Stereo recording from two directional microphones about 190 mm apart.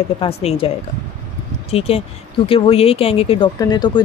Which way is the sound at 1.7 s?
30° left (ahead or behind).